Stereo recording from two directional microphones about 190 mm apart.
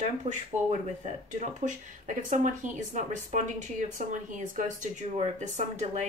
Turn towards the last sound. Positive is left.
turn(degrees=-40)  # may be behind; listen again after turning